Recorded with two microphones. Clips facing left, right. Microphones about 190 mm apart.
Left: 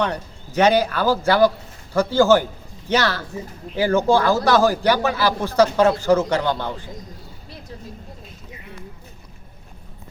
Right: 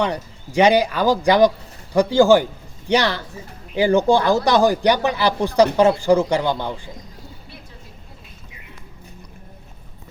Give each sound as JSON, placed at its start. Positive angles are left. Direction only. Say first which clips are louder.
{"t": 0.0, "sound": "speech", "louder": "right 1 dB", "side_deg": -10}